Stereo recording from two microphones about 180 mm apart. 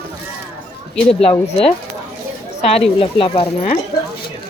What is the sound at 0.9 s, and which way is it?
Speech, 5° left (ahead or behind).